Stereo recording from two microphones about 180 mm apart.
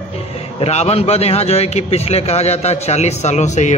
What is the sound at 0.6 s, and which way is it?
A man's voice, 35° left (ahead or behind).